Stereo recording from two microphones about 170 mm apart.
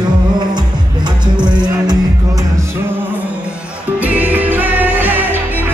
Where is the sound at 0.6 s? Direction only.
25° right (ahead or behind).